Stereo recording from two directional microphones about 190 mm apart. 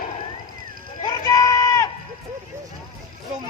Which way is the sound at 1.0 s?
20° left (ahead or behind).